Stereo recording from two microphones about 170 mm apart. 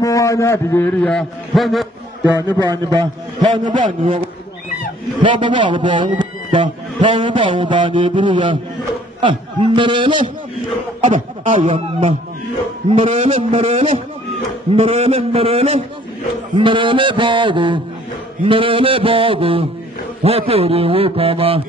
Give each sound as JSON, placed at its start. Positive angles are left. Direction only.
{"t": 0.0, "sound": "a man's voice", "side_deg": 20}
{"t": 2.5, "sound": "a man's voice", "side_deg": -25}
{"t": 11.0, "sound": "speech", "side_deg": -50}
{"t": 11.7, "sound": "a man's voice", "side_deg": -35}